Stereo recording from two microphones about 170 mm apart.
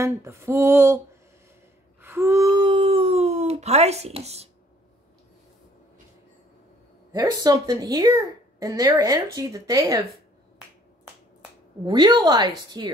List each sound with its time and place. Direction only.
0.0 s speech: 15° right (ahead or behind)
2.0 s wail: 15° right (ahead or behind); by 4.5 s 40° right (ahead or behind)
7.1 s speech: 20° right (ahead or behind)
11.8 s speech: 25° right (ahead or behind)